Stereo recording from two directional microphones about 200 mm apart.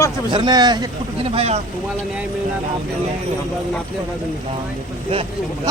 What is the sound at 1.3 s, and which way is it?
Speech, 30° right (ahead or behind).